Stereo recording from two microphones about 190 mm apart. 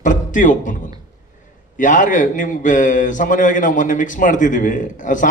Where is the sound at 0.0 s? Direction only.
40° left (ahead or behind).